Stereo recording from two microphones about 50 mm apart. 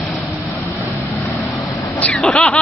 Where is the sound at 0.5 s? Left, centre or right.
Left.